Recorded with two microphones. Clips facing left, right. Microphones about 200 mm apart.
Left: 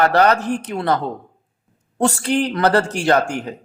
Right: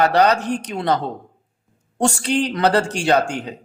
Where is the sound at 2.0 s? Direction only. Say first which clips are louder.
Left 1 dB; 15° right (ahead or behind).